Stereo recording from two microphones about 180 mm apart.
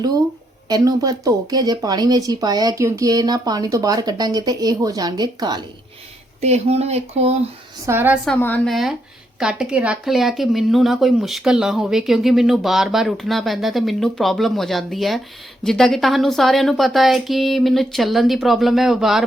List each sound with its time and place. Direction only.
0.7 s speech: 20° right (ahead or behind)
6.4 s speech: 35° right (ahead or behind)
7.9 s a woman's voice: 10° right (ahead or behind)
8.3 s speech: 10° left (ahead or behind)